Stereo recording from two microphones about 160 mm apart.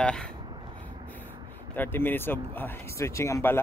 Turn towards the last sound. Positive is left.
turn(degrees=15)  # may be behind; listen again after turning